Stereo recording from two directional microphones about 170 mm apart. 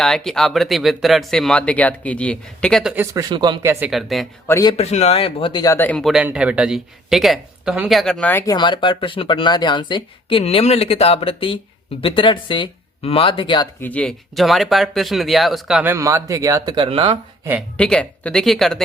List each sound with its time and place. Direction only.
0.0 s speech: centre (ahead or behind)
2.9 s speech: 10° right (ahead or behind)
3.2 s speech: 25° right (ahead or behind)
3.6 s speech: 10° right (ahead or behind)
4.4 s a man's voice: 15° left (ahead or behind)
4.8 s speech: 40° left (ahead or behind)
5.7 s speech: 10° left (ahead or behind)
8.3 s a man's voice: 15° left (ahead or behind)
8.5 s speech: 25° left (ahead or behind)
13.8 s speech: 5° left (ahead or behind); by 17.2 s 30° right (ahead or behind)
17.7 s speech: 5° left (ahead or behind)